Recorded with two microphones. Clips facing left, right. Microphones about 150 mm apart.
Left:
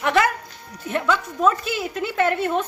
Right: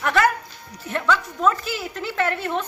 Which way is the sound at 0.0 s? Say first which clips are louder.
Even; 20° left (ahead or behind).